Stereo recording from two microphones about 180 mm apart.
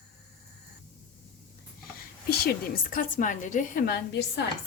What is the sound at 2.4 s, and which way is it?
A woman's voice, 55° left (ahead or behind).